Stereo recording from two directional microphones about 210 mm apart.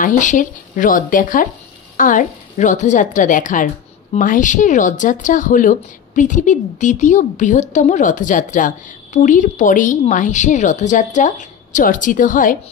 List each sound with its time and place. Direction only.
0.0 s a woman's voice: 35° left (ahead or behind)